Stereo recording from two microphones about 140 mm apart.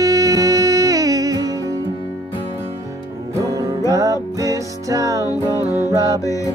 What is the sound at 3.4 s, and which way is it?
Music, 25° right (ahead or behind).